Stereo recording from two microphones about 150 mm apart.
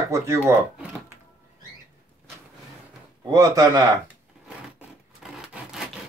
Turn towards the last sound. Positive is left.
turn(degrees=-5)  # may be behind; listen again after turning